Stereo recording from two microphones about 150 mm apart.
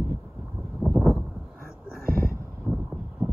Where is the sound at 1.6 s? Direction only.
80° right.